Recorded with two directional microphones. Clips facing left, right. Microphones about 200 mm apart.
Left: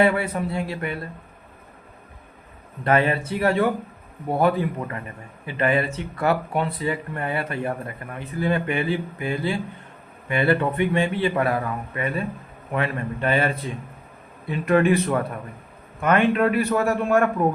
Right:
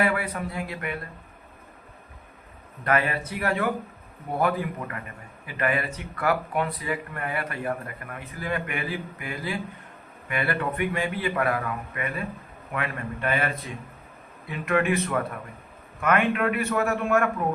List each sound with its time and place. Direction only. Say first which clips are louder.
0.0 s speech: left 5 dB; 25° left (ahead or behind)
2.8 s a man's voice: left 5 dB; 25° left (ahead or behind)